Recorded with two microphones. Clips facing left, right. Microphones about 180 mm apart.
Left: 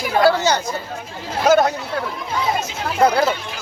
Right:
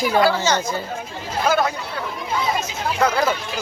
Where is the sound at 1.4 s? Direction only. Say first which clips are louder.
Left 5 dB; 40° left (ahead or behind).